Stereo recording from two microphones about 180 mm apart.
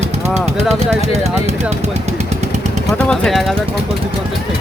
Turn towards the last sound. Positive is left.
turn(degrees=0)  # may be behind; listen again after turning